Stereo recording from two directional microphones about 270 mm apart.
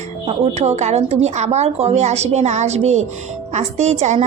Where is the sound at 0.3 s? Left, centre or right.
Right.